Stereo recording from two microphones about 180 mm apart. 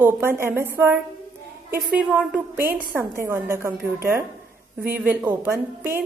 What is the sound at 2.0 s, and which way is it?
A woman's voice, 5° right (ahead or behind).